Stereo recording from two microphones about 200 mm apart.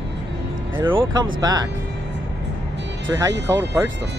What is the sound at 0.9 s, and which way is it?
Speech, 20° right (ahead or behind).